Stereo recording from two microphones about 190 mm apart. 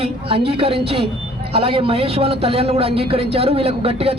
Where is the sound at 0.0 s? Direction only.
30° right (ahead or behind).